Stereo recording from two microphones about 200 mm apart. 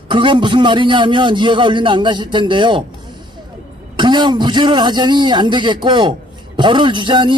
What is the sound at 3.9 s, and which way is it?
Speech, 20° right (ahead or behind).